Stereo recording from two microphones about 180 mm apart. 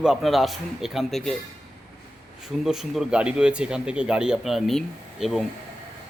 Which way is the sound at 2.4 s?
5° right (ahead or behind).